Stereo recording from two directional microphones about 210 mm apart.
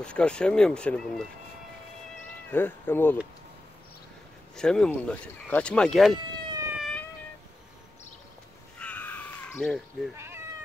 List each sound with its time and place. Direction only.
0.0 s speech: 5° left (ahead or behind)
2.5 s speech: 10° left (ahead or behind)
4.6 s speech: 5° left (ahead or behind)
6.1 s cat: 20° right (ahead or behind)
6.8 s cat: 5° left (ahead or behind)
8.7 s a sound: 5° left (ahead or behind)
10.1 s cat: 10° right (ahead or behind)